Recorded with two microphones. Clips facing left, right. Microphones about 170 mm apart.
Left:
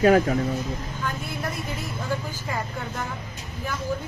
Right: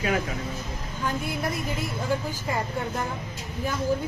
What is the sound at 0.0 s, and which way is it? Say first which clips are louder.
Speech: left 9 dB; 45° left (ahead or behind).